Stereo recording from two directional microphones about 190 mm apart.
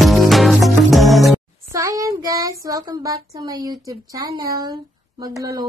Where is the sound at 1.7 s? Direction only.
15° right (ahead or behind).